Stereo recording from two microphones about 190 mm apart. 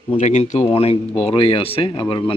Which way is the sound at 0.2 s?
35° left (ahead or behind).